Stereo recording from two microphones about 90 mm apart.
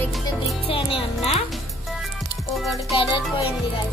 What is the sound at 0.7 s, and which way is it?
Music, 85° left.